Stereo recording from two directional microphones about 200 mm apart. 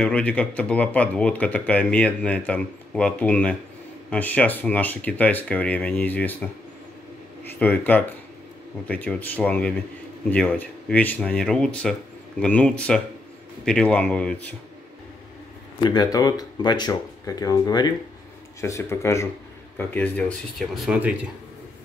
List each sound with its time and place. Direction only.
0.0 s speech: 5° left (ahead or behind)
7.5 s speech: 10° left (ahead or behind)
15.8 s speech: 20° left (ahead or behind); by 21.1 s 5° right (ahead or behind)